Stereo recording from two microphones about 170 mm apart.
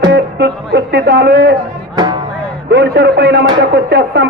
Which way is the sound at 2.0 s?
25° right (ahead or behind).